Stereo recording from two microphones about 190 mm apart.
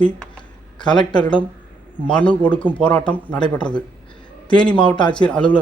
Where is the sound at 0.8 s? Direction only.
25° left (ahead or behind).